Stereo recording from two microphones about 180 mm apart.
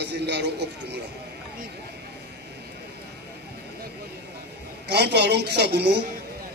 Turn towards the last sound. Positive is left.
turn(degrees=-65)  # may be behind; listen again after turning